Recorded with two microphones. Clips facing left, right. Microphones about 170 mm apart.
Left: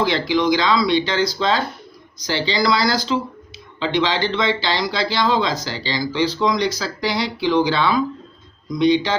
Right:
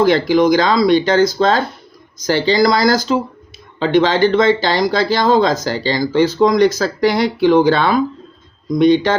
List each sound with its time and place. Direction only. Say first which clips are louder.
0.0 s speech: right 7 dB; 45° right (ahead or behind)